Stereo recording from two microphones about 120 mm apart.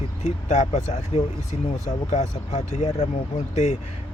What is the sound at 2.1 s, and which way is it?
Speech, 60° left (ahead or behind).